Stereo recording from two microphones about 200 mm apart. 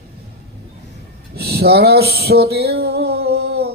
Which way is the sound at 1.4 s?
50° right (ahead or behind).